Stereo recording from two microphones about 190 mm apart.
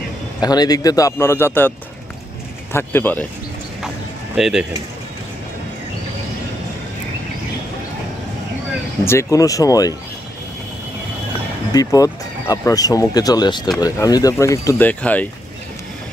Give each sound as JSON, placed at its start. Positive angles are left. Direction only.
{"t": 0.4, "sound": "speech", "side_deg": 20}
{"t": 2.7, "sound": "speech", "side_deg": 10}
{"t": 4.4, "sound": "speech", "side_deg": 0}
{"t": 9.0, "sound": "speech", "side_deg": 15}
{"t": 11.7, "sound": "speech", "side_deg": 20}